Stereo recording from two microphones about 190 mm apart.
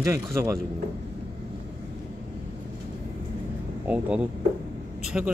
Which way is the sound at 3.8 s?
5° right (ahead or behind).